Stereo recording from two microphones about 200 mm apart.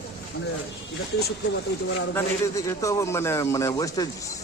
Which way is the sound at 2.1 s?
15° left (ahead or behind).